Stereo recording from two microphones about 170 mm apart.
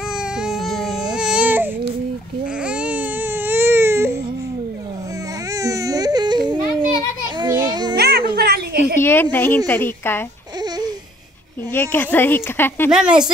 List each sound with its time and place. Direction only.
0.4 s baby cry: centre (ahead or behind)
5.5 s baby cry: 20° right (ahead or behind)
8.0 s a sound: 65° right (ahead or behind)
9.0 s a sound: 10° left (ahead or behind)
9.7 s a woman's voice: 10° left (ahead or behind)
11.7 s speech: 10° left (ahead or behind)
12.9 s a woman's voice: 5° right (ahead or behind)